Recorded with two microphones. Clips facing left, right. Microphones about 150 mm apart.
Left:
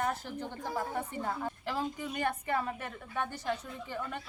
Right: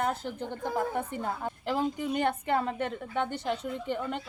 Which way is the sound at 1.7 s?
20° right (ahead or behind).